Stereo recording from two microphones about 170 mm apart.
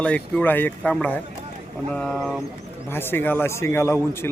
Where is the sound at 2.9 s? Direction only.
15° left (ahead or behind).